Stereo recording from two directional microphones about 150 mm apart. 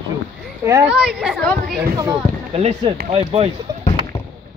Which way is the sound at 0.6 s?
20° right (ahead or behind).